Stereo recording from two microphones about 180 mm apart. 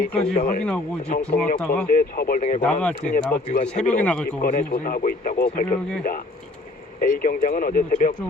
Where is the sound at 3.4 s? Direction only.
40° left (ahead or behind).